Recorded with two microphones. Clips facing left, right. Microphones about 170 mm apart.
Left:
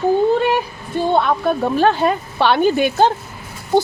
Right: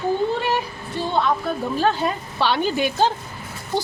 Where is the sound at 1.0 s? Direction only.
60° left (ahead or behind).